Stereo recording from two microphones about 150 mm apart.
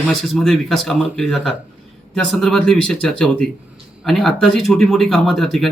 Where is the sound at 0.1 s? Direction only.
Centre (ahead or behind).